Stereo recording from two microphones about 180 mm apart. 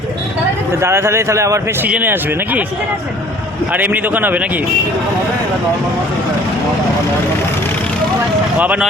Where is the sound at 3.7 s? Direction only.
10° right (ahead or behind).